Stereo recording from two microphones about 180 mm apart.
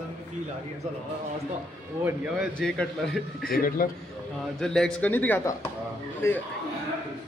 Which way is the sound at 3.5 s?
50° left (ahead or behind).